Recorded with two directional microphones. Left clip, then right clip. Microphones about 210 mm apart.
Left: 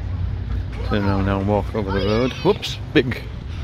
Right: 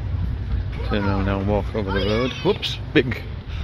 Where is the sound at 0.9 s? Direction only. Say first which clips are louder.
Left 2 dB; 15° left (ahead or behind).